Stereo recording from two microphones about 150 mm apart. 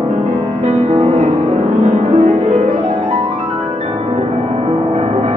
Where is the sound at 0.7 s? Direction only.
45° right (ahead or behind).